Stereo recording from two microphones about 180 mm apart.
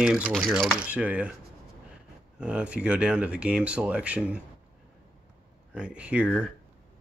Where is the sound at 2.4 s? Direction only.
5° right (ahead or behind).